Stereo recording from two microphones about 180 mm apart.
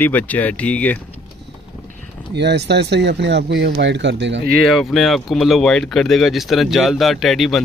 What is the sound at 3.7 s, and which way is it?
Speech, 75° right (ahead or behind).